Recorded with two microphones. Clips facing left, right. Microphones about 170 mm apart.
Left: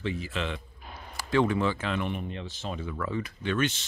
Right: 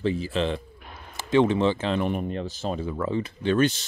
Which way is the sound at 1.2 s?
20° right (ahead or behind).